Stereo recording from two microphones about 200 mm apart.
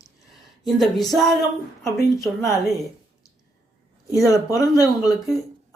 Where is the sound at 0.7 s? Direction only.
Centre (ahead or behind).